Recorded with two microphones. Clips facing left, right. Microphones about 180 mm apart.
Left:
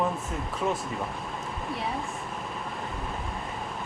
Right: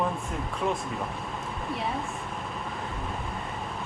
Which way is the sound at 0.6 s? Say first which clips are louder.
Even; centre (ahead or behind).